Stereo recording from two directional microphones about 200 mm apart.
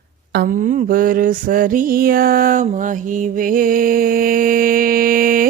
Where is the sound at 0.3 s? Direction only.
45° right (ahead or behind).